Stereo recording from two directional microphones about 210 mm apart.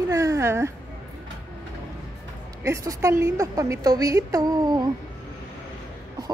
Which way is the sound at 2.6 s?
15° right (ahead or behind).